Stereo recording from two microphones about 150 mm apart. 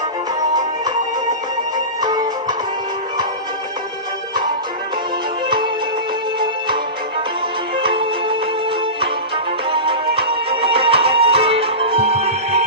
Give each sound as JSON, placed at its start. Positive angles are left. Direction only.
{"t": 2.0, "sound": "music", "side_deg": -25}
{"t": 7.8, "sound": "music", "side_deg": -35}
{"t": 9.7, "sound": "music", "side_deg": -35}